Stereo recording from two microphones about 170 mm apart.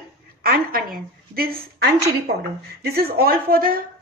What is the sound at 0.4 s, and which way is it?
A woman's voice, 60° right (ahead or behind).